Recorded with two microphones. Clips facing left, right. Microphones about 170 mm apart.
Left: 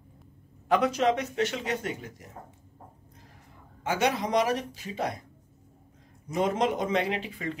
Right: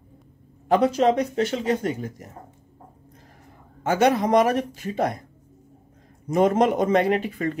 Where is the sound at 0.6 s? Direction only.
30° right (ahead or behind).